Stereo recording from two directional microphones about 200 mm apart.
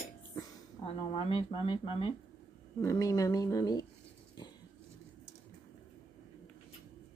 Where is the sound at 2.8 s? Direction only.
15° left (ahead or behind).